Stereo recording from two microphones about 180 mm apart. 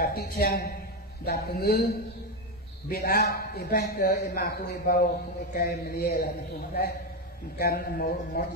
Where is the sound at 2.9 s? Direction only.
60° left (ahead or behind).